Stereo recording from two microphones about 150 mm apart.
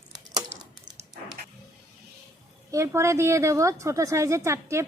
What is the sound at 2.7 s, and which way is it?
A woman's voice, 20° right (ahead or behind).